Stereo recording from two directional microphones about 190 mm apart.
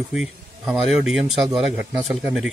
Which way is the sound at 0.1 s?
5° right (ahead or behind).